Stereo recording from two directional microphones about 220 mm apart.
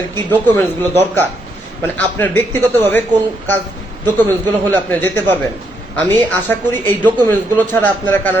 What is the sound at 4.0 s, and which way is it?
Speech, 20° right (ahead or behind).